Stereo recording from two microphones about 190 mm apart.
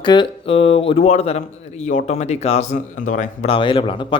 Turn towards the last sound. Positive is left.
turn(degrees=25)  # may be behind; listen again after turning